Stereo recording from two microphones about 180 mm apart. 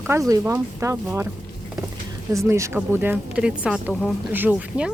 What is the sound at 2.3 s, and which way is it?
A woman's voice, 15° right (ahead or behind).